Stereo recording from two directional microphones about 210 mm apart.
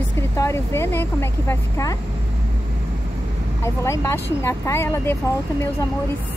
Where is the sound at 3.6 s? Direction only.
15° left (ahead or behind).